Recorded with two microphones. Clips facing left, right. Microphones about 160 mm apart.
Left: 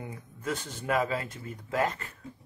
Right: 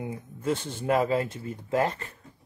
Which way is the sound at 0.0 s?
25° right (ahead or behind).